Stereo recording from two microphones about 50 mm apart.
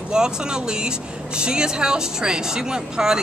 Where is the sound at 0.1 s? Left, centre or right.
Centre.